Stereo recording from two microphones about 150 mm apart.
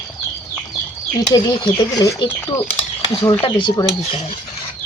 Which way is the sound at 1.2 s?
25° left (ahead or behind).